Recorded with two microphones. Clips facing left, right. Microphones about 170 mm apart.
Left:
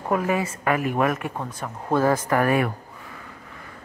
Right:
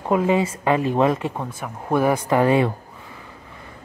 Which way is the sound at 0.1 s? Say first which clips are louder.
Right 4 dB; 20° right (ahead or behind).